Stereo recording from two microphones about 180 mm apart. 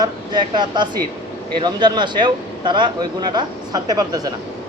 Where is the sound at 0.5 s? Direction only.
25° right (ahead or behind).